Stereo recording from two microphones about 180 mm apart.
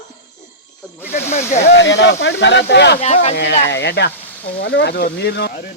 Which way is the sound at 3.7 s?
70° left (ahead or behind).